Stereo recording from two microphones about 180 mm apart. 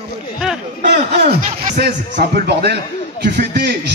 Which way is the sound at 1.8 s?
65° right (ahead or behind).